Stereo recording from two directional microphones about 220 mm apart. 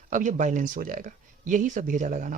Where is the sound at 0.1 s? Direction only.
35° right (ahead or behind).